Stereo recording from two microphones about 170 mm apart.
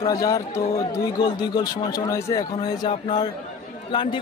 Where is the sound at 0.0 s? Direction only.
20° left (ahead or behind).